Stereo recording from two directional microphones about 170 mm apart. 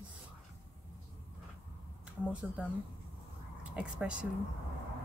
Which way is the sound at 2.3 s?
5° right (ahead or behind).